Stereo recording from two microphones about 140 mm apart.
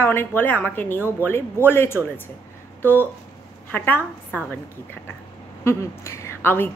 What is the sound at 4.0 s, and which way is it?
Speech, 15° right (ahead or behind).